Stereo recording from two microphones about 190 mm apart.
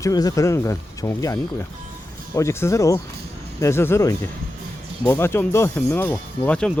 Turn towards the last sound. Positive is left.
turn(degrees=5)  # may be behind; listen again after turning